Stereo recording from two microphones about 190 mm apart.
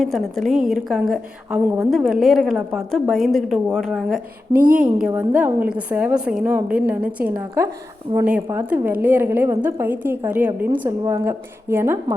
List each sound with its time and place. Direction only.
0.0 s a woman's voice: centre (ahead or behind)
4.5 s a woman's voice: 45° right (ahead or behind)
4.9 s a woman's voice: 5° right (ahead or behind)